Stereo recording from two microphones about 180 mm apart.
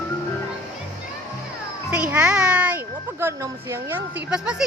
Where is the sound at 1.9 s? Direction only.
5° right (ahead or behind).